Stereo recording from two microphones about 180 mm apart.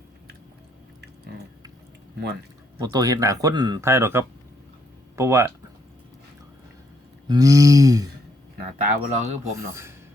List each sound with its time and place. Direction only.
2.8 s speech: 20° right (ahead or behind)
7.3 s speech: 20° right (ahead or behind)
8.8 s speech: 40° right (ahead or behind)
9.5 s speech: 15° right (ahead or behind)